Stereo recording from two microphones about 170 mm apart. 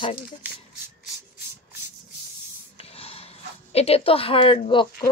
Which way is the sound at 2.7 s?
35° left (ahead or behind).